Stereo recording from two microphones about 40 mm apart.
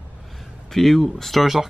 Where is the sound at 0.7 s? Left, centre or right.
Centre.